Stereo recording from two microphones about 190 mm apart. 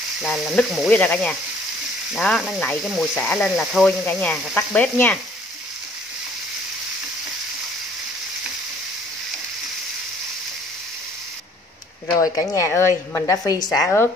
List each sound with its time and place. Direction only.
0.2 s speech: centre (ahead or behind)
12.1 s a woman's voice: 15° left (ahead or behind)